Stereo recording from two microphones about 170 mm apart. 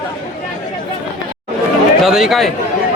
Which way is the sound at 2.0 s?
Centre (ahead or behind).